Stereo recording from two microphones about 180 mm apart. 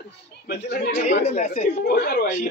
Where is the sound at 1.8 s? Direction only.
60° left (ahead or behind).